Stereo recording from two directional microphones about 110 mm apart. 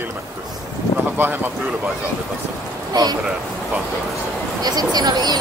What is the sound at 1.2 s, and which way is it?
Speech, 15° right (ahead or behind).